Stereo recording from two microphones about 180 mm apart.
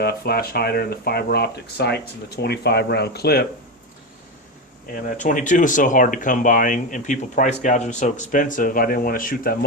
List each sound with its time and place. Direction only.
0.0 s speech: 60° left (ahead or behind)
5.0 s speech: 45° left (ahead or behind)